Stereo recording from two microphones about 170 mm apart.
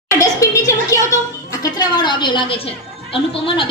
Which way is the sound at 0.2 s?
20° left (ahead or behind).